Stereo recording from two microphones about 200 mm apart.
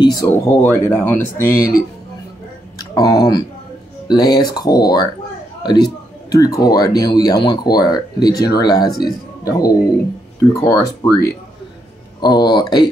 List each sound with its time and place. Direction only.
0.0 s speech: 20° left (ahead or behind)
2.8 s speech: 20° left (ahead or behind)